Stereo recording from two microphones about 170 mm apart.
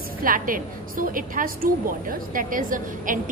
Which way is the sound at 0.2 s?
55° right (ahead or behind).